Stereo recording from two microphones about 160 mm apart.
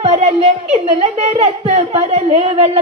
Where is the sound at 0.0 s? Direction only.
40° right (ahead or behind).